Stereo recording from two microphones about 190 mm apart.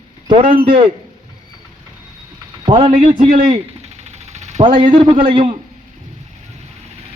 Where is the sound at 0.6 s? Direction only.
30° right (ahead or behind).